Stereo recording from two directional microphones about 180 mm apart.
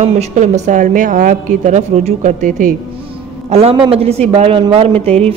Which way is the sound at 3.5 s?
35° right (ahead or behind).